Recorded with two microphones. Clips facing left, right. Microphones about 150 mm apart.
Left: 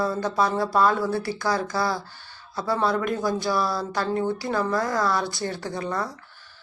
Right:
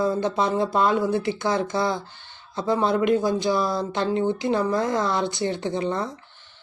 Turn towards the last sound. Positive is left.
turn(degrees=-20)  # may be behind; listen again after turning